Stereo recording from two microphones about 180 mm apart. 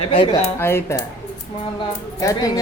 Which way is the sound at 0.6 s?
15° left (ahead or behind).